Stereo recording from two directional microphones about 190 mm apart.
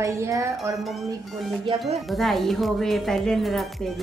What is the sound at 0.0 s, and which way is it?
Speech, 15° right (ahead or behind).